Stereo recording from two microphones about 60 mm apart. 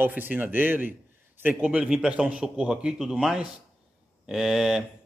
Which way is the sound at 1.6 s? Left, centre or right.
Centre.